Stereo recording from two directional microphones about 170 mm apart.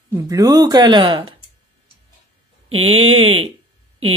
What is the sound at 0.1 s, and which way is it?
Speech, 20° right (ahead or behind).